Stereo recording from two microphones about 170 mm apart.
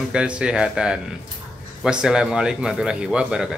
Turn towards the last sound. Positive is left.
turn(degrees=-5)  # may be behind; listen again after turning